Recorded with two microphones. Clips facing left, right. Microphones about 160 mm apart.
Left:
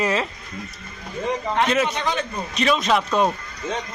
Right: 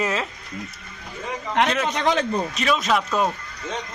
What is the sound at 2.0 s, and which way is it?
Speech, 90° right.